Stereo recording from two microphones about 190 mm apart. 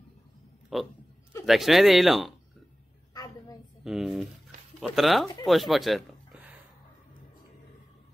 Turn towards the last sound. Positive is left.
turn(degrees=-5)  # may be behind; listen again after turning